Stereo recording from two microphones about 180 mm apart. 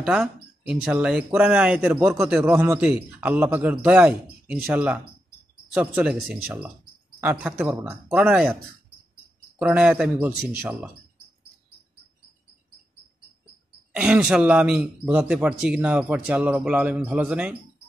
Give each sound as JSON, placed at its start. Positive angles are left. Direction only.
{"t": 0.0, "sound": "a man's voice", "side_deg": -5}
{"t": 9.6, "sound": "a man's voice", "side_deg": -5}
{"t": 13.9, "sound": "a man's voice", "side_deg": -5}